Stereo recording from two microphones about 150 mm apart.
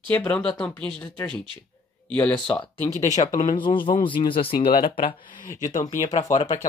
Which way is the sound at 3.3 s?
30° left (ahead or behind).